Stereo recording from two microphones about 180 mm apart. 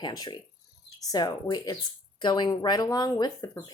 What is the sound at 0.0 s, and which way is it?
Speech, 20° left (ahead or behind).